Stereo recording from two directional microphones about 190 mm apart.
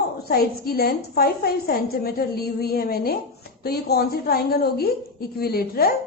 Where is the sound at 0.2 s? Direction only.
55° left (ahead or behind).